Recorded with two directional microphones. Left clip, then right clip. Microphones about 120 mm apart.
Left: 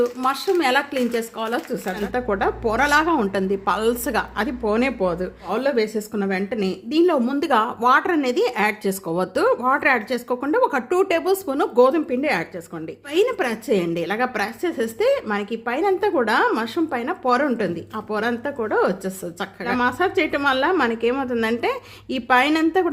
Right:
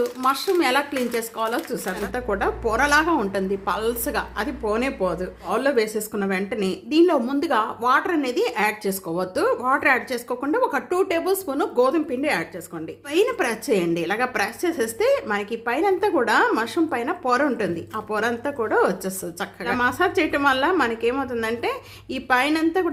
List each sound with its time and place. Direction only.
0.0 s speech: 25° left (ahead or behind)
5.5 s a woman's voice: 10° left (ahead or behind); by 12.5 s 35° left (ahead or behind)
13.1 s a woman's voice: 15° left (ahead or behind); by 22.9 s 40° left (ahead or behind)